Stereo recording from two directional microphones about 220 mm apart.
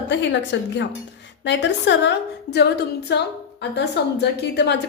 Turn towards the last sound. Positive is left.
turn(degrees=50)  # may be behind; listen again after turning